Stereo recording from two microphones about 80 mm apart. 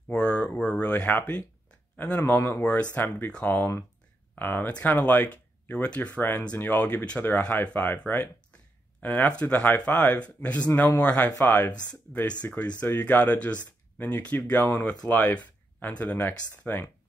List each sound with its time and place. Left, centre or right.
0.1 s a sound: centre
0.6 s speech: centre
2.6 s speech: centre
3.5 s speech: left
12.8 s speech: left